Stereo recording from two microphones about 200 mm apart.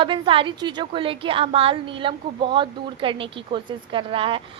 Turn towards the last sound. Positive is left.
turn(degrees=-25)  # may be behind; listen again after turning